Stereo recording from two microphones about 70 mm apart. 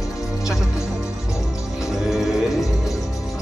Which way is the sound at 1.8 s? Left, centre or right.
Centre.